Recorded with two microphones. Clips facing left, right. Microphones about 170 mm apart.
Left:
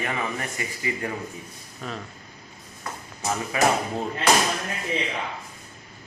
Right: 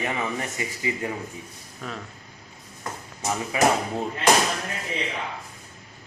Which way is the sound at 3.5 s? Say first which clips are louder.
Right 1 dB; 20° right (ahead or behind).